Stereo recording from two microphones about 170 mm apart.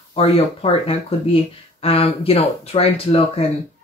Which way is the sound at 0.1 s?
35° left (ahead or behind).